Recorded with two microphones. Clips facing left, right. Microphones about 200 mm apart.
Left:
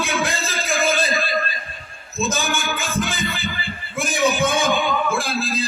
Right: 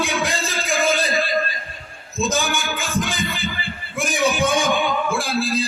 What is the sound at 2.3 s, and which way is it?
Music, 15° right (ahead or behind).